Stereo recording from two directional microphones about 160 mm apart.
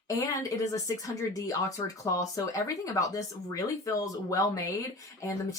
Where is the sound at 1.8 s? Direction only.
20° left (ahead or behind).